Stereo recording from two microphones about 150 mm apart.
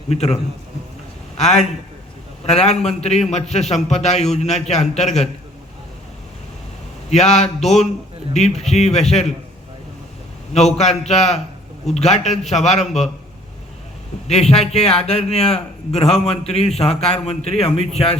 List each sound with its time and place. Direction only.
0.1 s a man's voice: 45° left (ahead or behind)
1.4 s a man's voice: 50° left (ahead or behind)
7.1 s a man's voice: 50° left (ahead or behind)
10.5 s a man's voice: 45° left (ahead or behind)
14.3 s a man's voice: 45° left (ahead or behind)